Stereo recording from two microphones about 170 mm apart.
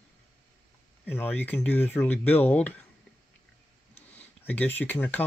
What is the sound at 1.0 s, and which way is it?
Speech, 10° left (ahead or behind).